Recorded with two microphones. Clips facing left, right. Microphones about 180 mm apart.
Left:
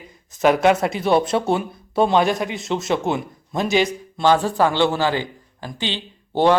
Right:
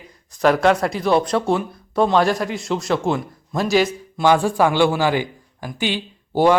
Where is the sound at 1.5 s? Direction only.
25° left (ahead or behind).